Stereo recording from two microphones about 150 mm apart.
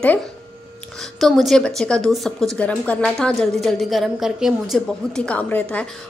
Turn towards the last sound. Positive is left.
turn(degrees=10)  # may be behind; listen again after turning